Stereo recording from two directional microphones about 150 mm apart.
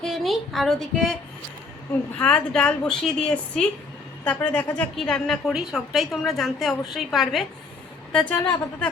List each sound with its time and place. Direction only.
0.0 s a woman's voice: centre (ahead or behind)
2.1 s a woman's voice: 5° left (ahead or behind)
8.4 s speech: 15° left (ahead or behind)